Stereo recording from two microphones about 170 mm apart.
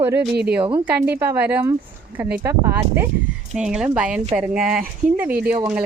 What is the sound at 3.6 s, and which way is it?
Music, 5° right (ahead or behind).